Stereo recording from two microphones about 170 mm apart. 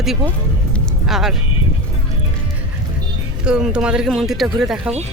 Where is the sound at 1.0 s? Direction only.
Centre (ahead or behind).